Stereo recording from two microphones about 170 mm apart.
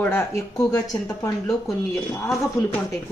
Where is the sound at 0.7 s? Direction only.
20° left (ahead or behind).